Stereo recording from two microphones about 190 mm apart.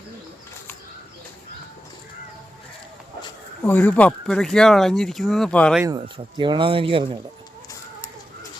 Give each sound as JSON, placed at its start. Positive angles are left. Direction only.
{"t": 3.7, "sound": "speech", "side_deg": 10}
{"t": 6.1, "sound": "speech", "side_deg": -25}